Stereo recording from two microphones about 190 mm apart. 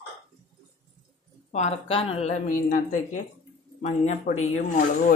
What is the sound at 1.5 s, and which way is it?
A woman's voice, 35° left (ahead or behind).